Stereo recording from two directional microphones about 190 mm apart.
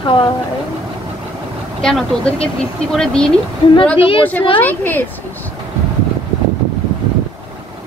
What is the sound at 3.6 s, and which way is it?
Speech, 25° left (ahead or behind).